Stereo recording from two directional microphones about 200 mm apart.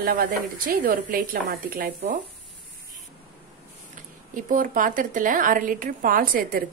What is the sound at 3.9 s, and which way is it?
Speech, 40° right (ahead or behind).